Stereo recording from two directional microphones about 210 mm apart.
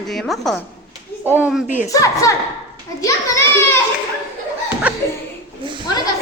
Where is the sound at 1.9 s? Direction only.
15° left (ahead or behind).